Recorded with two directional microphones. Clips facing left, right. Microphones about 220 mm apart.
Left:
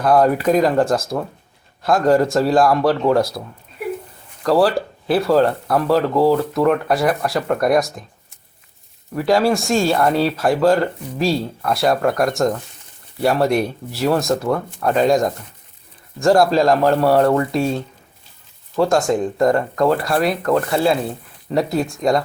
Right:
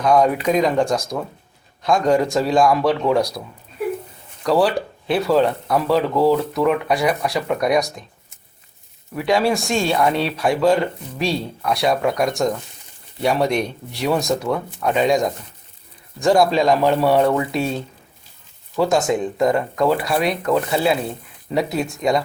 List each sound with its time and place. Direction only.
0.0 s speech: 5° left (ahead or behind)
4.4 s speech: centre (ahead or behind)
9.1 s speech: centre (ahead or behind)
18.8 s speech: centre (ahead or behind)